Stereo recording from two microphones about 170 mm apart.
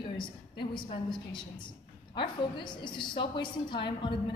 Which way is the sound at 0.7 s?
30° left (ahead or behind).